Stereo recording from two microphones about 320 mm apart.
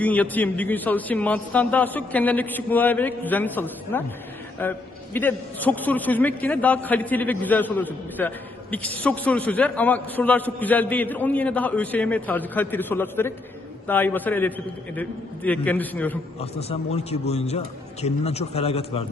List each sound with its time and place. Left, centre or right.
0.0 s a man's voice: centre
16.4 s a man's voice: centre